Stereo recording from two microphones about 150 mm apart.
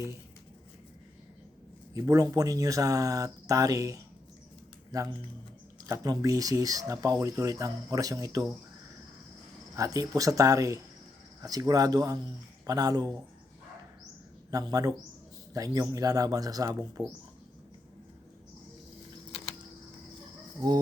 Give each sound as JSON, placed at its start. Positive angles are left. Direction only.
{"t": 1.9, "sound": "speech", "side_deg": -20}
{"t": 9.7, "sound": "speech", "side_deg": -25}
{"t": 14.5, "sound": "speech", "side_deg": -25}
{"t": 19.3, "sound": "a sound", "side_deg": 40}